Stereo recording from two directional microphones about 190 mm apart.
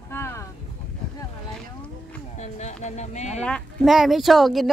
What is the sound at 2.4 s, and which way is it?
Speech, 35° left (ahead or behind).